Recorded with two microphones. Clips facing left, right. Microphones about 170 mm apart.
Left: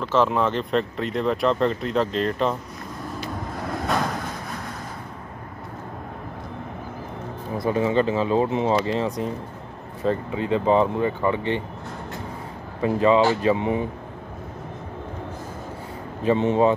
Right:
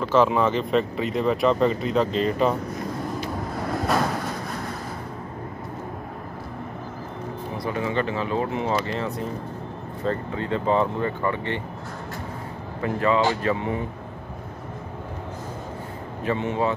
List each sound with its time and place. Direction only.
0.0 s speech: centre (ahead or behind)
7.6 s speech: 25° left (ahead or behind)
12.8 s speech: 20° left (ahead or behind)
16.3 s speech: 25° left (ahead or behind)